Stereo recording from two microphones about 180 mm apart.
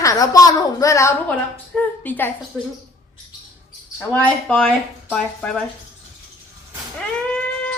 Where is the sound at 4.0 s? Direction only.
10° left (ahead or behind).